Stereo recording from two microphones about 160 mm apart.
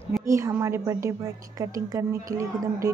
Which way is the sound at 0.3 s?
20° right (ahead or behind).